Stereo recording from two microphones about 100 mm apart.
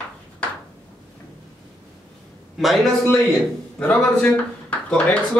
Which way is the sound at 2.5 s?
Centre (ahead or behind).